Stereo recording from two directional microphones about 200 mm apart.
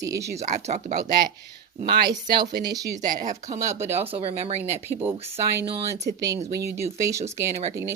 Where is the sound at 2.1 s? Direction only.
20° right (ahead or behind).